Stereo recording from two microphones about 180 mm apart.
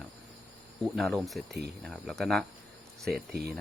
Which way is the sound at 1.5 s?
65° right (ahead or behind).